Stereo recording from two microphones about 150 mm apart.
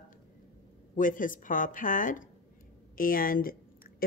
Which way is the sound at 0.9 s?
60° left (ahead or behind).